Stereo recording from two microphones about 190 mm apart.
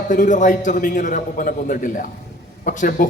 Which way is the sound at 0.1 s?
40° left (ahead or behind).